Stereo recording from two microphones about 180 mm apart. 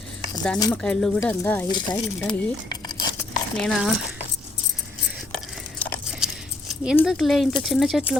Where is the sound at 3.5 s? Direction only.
Centre (ahead or behind).